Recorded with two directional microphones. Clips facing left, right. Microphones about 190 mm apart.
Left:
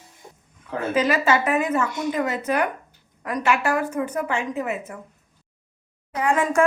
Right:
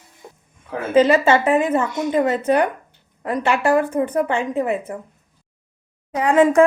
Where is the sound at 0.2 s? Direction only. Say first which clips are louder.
Right 4 dB; 60° right (ahead or behind).